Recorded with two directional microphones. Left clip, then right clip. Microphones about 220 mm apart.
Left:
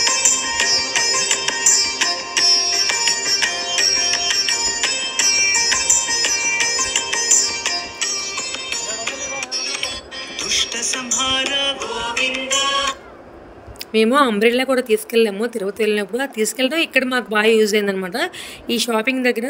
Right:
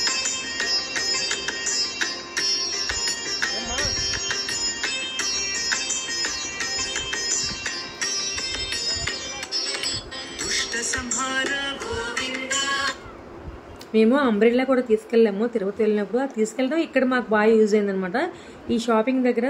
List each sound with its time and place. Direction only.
0.0 s music: 35° left (ahead or behind)
12.2 s music: 25° left (ahead or behind)
13.9 s speech: 45° left (ahead or behind)